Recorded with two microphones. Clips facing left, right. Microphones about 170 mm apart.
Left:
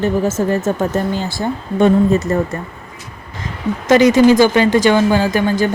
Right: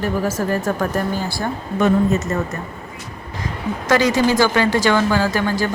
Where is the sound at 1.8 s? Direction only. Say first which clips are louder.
Left 4 dB; 35° left (ahead or behind).